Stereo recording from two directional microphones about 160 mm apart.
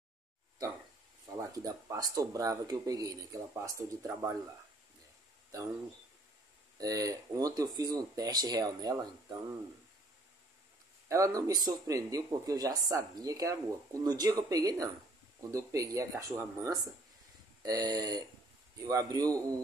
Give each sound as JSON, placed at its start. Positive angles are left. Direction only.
{"t": 1.2, "sound": "speech", "side_deg": -20}
{"t": 6.8, "sound": "speech", "side_deg": -20}
{"t": 11.1, "sound": "speech", "side_deg": -20}